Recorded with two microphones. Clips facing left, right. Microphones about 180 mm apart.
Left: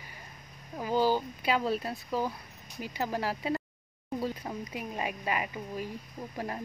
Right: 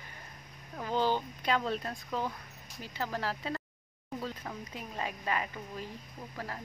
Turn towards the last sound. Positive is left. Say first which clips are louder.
# left 5 dB
turn(degrees=20)  # may be behind; listen again after turning